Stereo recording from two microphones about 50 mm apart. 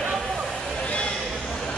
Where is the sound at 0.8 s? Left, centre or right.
Left.